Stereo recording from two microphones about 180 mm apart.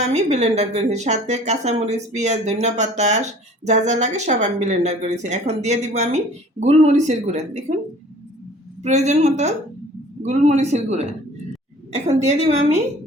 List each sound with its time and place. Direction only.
0.0 s speech: 40° right (ahead or behind)
8.8 s speech: 40° right (ahead or behind)